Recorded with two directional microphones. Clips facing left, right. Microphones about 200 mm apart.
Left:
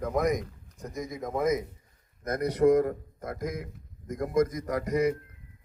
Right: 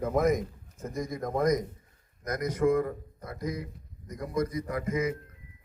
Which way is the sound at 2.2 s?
30° left (ahead or behind).